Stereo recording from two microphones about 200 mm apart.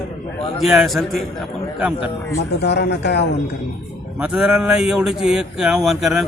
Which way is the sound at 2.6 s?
55° left (ahead or behind).